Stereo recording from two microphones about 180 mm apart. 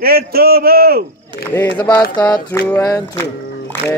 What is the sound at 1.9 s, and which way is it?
Speech, 20° left (ahead or behind).